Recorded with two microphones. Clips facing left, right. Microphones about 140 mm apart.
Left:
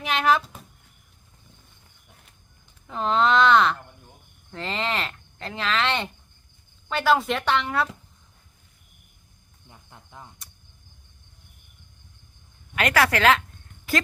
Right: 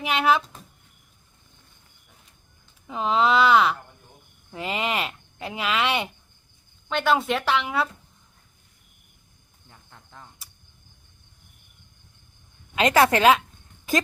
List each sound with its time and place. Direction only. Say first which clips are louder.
0.0 s speech: even; 5° right (ahead or behind)
2.8 s speech: even; 5° right (ahead or behind)
6.8 s speech: left 1 dB; centre (ahead or behind)
9.6 s cricket: left 2 dB; 15° left (ahead or behind)
12.7 s speech: right 3 dB; 20° right (ahead or behind)